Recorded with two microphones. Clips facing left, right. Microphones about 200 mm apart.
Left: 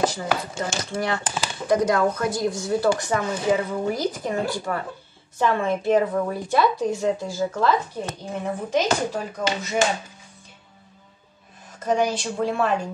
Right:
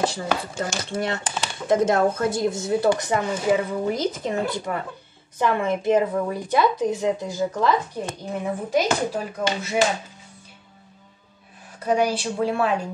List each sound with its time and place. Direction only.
0.0 s a woman's voice: 30° right (ahead or behind); by 9.8 s 10° right (ahead or behind)
11.8 s speech: 10° right (ahead or behind)